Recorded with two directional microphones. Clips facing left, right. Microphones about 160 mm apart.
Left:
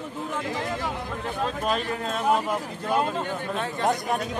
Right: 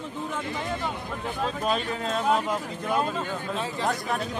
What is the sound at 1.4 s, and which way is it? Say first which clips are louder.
Speech: even; centre (ahead or behind).